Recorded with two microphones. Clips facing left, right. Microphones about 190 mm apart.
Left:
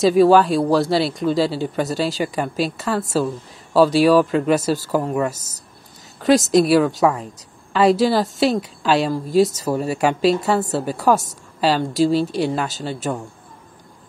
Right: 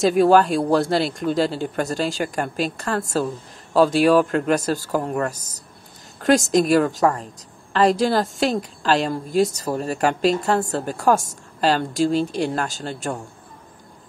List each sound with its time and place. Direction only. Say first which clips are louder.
0.0 s speech: left 2 dB; centre (ahead or behind)
5.3 s speech: left 1 dB; 45° left (ahead or behind)
6.2 s speech: left 2 dB; centre (ahead or behind)